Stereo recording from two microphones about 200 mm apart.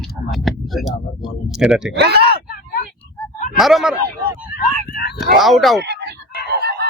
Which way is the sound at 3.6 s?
Centre (ahead or behind).